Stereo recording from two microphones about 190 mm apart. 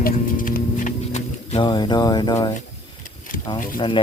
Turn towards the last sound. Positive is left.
turn(degrees=25)  # may be behind; listen again after turning